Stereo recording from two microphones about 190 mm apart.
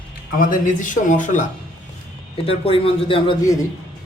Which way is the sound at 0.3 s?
40° left (ahead or behind).